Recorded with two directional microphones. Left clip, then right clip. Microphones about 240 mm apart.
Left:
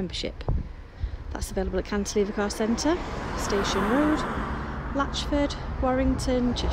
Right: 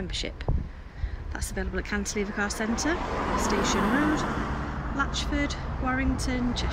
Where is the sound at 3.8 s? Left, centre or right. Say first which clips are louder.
Left 1 dB; right.